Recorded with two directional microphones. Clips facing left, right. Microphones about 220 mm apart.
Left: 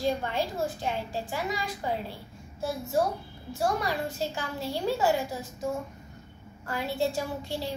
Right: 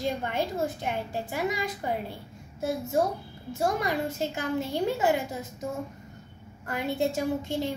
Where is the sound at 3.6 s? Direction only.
20° right (ahead or behind).